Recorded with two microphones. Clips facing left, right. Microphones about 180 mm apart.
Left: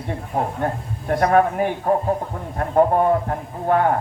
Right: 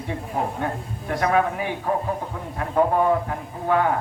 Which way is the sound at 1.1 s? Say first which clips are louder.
Left 4 dB; 50° left (ahead or behind).